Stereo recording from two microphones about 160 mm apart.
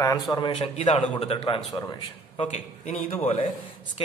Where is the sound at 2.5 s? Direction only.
45° left (ahead or behind).